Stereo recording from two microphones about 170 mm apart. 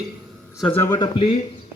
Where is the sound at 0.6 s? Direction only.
10° left (ahead or behind).